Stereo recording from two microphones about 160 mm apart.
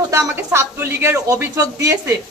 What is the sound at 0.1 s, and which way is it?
A woman's voice, 15° right (ahead or behind).